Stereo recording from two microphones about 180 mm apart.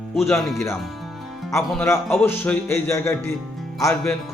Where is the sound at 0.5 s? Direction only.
15° left (ahead or behind).